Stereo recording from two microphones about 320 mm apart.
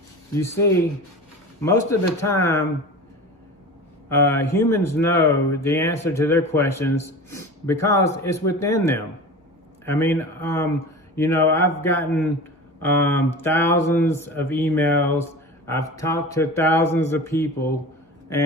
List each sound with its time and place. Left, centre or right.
0.3 s speech: centre
4.1 s speech: centre